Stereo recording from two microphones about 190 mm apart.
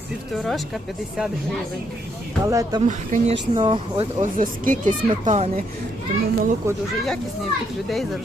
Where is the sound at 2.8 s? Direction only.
40° right (ahead or behind).